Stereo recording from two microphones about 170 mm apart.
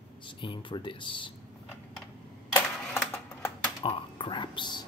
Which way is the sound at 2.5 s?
10° left (ahead or behind).